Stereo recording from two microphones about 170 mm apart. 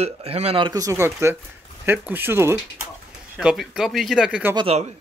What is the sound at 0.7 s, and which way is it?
Speech, 20° right (ahead or behind).